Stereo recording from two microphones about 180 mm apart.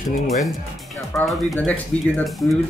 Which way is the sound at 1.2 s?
Centre (ahead or behind).